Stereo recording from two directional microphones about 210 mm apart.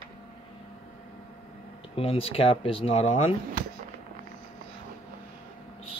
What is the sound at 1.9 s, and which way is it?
Speech, 25° left (ahead or behind).